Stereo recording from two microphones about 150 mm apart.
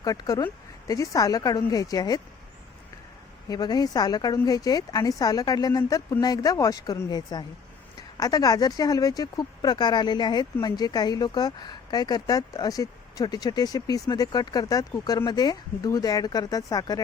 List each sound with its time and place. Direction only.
0.0 s speech: 25° left (ahead or behind)
3.5 s speech: 25° left (ahead or behind)